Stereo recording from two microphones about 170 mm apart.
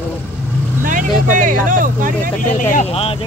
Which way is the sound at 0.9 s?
50° right (ahead or behind).